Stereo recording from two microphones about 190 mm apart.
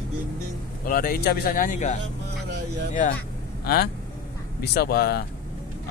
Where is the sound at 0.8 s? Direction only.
50° left (ahead or behind).